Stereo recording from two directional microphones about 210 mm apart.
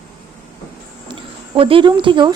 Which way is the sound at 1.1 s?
25° right (ahead or behind).